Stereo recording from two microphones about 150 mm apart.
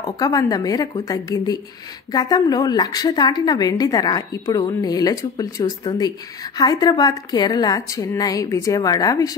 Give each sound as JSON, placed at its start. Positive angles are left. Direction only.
{"t": 0.0, "sound": "a woman's voice", "side_deg": 25}